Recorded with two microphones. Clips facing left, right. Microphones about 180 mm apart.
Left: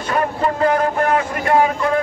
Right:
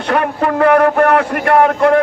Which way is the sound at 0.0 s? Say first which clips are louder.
Right 4 dB; 65° right (ahead or behind).